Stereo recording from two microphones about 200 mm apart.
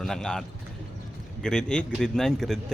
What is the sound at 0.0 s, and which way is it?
Speech, 5° left (ahead or behind).